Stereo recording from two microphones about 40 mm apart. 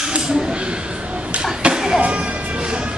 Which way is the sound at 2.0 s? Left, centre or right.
Right.